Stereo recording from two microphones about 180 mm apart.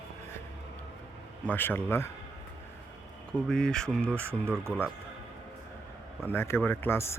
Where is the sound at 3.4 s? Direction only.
5° left (ahead or behind).